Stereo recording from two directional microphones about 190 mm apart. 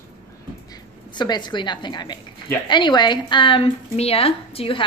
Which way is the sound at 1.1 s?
25° left (ahead or behind).